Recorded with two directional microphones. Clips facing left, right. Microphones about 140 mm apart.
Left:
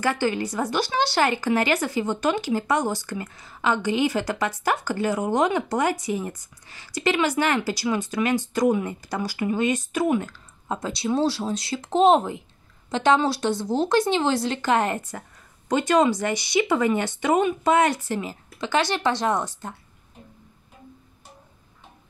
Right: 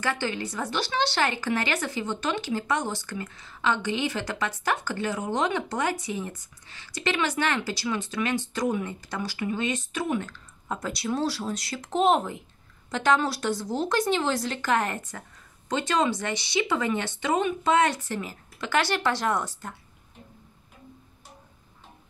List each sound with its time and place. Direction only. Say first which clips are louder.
0.0 s a woman's voice: left 5 dB; 40° left (ahead or behind)
10.8 s speech: left 5 dB; 25° left (ahead or behind)
16.3 s speech: left 5 dB; 15° left (ahead or behind)
16.6 s a woman's voice: left 5 dB; 40° left (ahead or behind)
18.6 s speech: left 2 dB; 20° left (ahead or behind)